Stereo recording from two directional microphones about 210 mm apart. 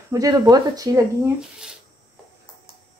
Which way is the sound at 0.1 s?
15° right (ahead or behind).